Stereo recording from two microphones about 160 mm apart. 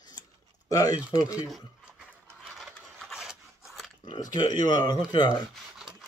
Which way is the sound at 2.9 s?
Centre (ahead or behind).